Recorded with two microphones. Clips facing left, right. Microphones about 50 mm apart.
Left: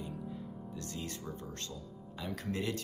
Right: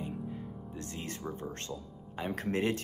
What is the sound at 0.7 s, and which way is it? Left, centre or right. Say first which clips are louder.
Speech: right 2 dB; right.